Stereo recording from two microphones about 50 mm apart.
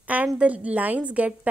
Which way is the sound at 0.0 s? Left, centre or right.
Right.